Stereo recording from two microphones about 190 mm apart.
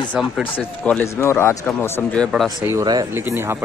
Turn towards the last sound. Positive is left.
turn(degrees=-10)  # may be behind; listen again after turning